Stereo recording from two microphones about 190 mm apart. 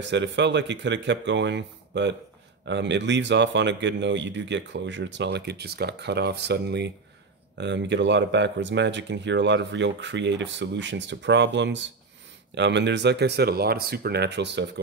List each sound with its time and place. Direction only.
0.0 s speech: 70° right (ahead or behind)